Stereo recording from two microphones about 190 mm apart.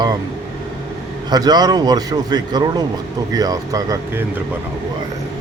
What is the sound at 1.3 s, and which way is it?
Speech, 20° right (ahead or behind).